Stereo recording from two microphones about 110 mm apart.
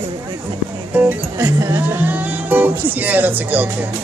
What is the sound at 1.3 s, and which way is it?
Speech, 30° right (ahead or behind).